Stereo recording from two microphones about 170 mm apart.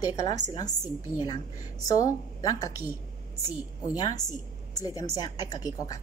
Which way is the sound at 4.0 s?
20° left (ahead or behind).